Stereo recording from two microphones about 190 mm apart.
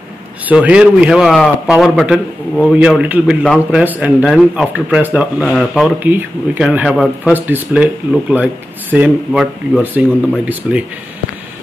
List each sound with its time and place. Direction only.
0.5 s a man's voice: 5° right (ahead or behind)